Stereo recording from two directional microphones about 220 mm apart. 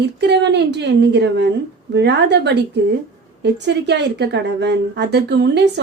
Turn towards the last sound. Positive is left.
turn(degrees=-50)  # may be behind; listen again after turning